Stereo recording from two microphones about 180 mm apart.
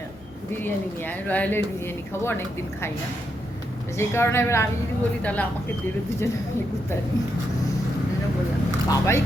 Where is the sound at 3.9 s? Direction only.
15° left (ahead or behind).